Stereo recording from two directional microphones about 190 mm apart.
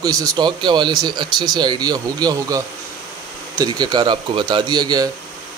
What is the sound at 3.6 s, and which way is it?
A man's voice, 20° right (ahead or behind).